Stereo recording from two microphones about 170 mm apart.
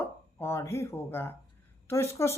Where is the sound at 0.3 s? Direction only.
15° left (ahead or behind).